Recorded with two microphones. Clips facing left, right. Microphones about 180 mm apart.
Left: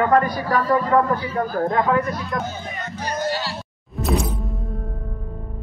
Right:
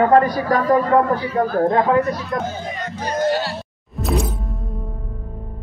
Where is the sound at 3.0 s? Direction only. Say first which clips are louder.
Right 5 dB; 50° right (ahead or behind).